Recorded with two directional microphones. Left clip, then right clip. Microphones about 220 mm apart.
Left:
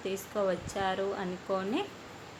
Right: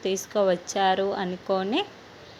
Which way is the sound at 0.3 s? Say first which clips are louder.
Right 8 dB; 30° right (ahead or behind).